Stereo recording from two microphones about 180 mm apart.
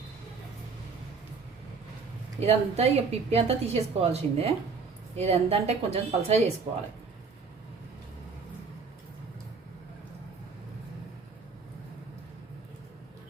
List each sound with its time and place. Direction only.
2.4 s a woman's voice: 35° right (ahead or behind)